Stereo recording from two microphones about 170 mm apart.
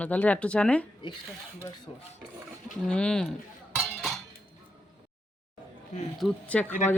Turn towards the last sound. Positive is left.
turn(degrees=10)  # may be behind; listen again after turning